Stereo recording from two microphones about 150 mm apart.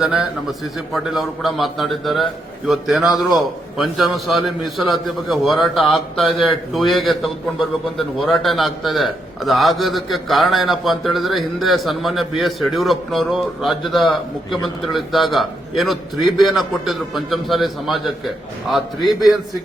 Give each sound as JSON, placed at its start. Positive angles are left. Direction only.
{"t": 0.0, "sound": "a man's voice", "side_deg": -5}